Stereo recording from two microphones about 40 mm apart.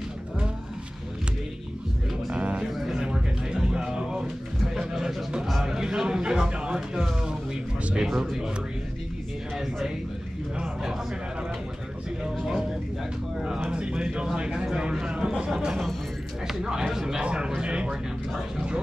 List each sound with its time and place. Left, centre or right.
2.3 s music: right
2.7 s a sound: centre
3.0 s music: right
4.7 s a sound: centre
6.5 s speech: right
8.0 s speech: centre
10.6 s speech: centre
13.7 s speech: right
17.2 s speech: right